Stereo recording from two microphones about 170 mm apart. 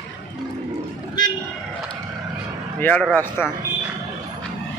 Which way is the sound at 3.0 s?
Centre (ahead or behind).